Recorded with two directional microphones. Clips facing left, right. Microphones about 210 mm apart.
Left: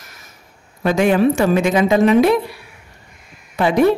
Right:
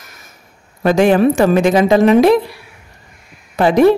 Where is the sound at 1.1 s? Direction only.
45° right (ahead or behind).